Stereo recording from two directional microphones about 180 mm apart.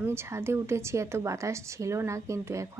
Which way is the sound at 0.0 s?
15° right (ahead or behind).